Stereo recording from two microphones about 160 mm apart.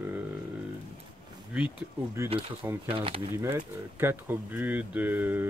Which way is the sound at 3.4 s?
15° right (ahead or behind).